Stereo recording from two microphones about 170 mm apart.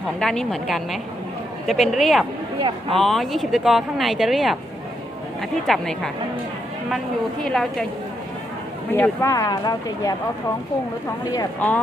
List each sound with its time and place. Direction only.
0.2 s speech: 5° left (ahead or behind)
2.6 s speech: 30° right (ahead or behind)
3.0 s speech: centre (ahead or behind)
7.4 s speech: centre (ahead or behind)
8.9 s speech: 15° left (ahead or behind)